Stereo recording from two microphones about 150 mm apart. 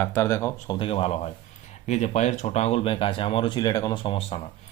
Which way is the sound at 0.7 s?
40° left (ahead or behind).